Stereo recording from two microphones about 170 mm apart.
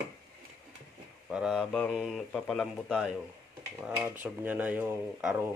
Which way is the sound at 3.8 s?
10° right (ahead or behind).